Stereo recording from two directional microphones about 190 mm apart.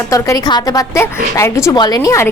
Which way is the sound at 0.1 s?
20° left (ahead or behind).